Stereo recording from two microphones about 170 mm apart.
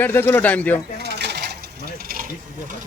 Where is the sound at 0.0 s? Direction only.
10° left (ahead or behind).